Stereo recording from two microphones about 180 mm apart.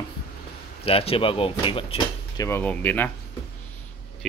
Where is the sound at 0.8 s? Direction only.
30° left (ahead or behind).